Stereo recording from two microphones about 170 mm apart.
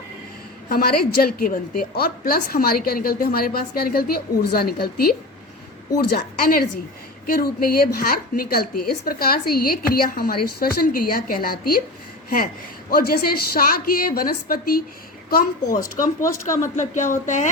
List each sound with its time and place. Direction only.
0.7 s a woman's voice: 60° left (ahead or behind)
12.9 s a woman's voice: 65° left (ahead or behind)
15.6 s speech: 20° left (ahead or behind)
16.7 s speech: 45° left (ahead or behind)